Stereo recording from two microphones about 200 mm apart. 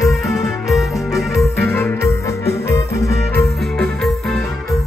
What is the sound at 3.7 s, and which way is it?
Music, centre (ahead or behind).